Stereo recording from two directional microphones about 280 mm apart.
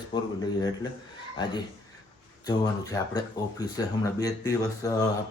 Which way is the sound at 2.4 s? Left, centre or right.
Centre.